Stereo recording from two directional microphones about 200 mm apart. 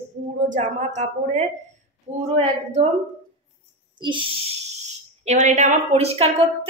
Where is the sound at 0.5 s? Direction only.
35° right (ahead or behind).